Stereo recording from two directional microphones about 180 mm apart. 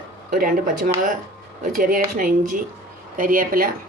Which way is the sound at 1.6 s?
50° right (ahead or behind).